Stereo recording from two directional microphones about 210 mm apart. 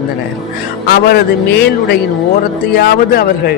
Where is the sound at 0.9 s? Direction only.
50° left (ahead or behind).